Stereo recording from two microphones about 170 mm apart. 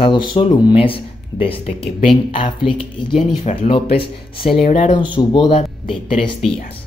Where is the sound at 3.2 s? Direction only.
45° left (ahead or behind).